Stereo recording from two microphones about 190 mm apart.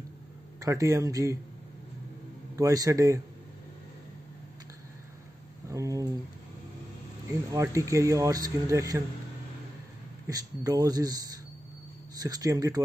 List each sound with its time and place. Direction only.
0.6 s speech: 15° right (ahead or behind)
2.5 s speech: 20° right (ahead or behind)
5.7 s a sound: 15° right (ahead or behind)
7.5 s speech: 15° right (ahead or behind)
10.2 s speech: 20° right (ahead or behind)